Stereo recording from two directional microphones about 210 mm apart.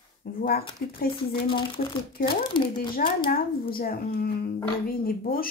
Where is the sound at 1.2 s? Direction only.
25° left (ahead or behind).